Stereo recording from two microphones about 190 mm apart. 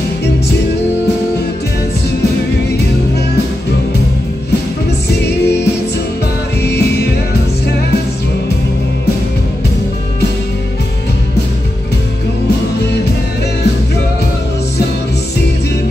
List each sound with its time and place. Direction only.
6.6 s music: 60° left (ahead or behind)